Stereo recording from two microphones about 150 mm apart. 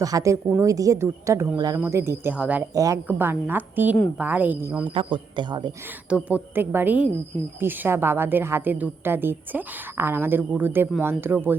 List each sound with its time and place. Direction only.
0.0 s a woman's voice: 20° right (ahead or behind)
2.7 s a woman's voice: 25° right (ahead or behind)
4.9 s speech: 35° right (ahead or behind)
6.1 s a woman's voice: 10° right (ahead or behind)